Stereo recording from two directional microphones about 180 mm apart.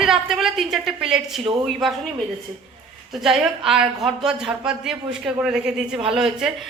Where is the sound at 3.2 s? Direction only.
Centre (ahead or behind).